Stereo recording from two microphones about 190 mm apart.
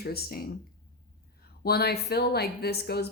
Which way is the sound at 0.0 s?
55° left (ahead or behind).